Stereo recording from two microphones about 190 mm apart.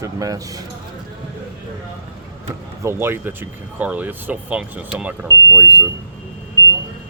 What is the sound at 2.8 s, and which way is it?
Speech, 15° right (ahead or behind).